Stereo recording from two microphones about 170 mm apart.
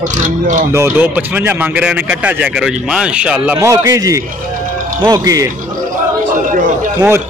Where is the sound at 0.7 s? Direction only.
15° right (ahead or behind).